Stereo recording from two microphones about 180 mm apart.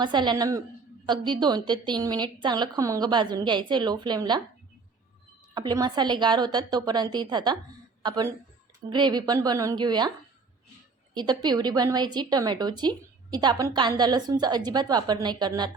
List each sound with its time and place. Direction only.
0.0 s a woman's voice: 25° right (ahead or behind)
5.5 s a woman's voice: 25° right (ahead or behind)
11.1 s a woman's voice: 25° right (ahead or behind)